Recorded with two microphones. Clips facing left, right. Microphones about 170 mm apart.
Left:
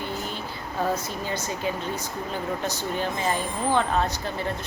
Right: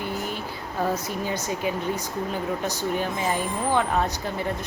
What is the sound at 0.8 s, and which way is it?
Speech, 10° right (ahead or behind).